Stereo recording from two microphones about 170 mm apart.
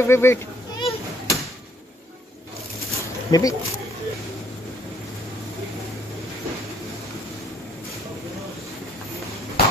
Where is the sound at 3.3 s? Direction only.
20° left (ahead or behind).